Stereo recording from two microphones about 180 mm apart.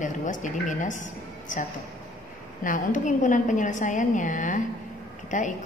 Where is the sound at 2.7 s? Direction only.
45° left (ahead or behind).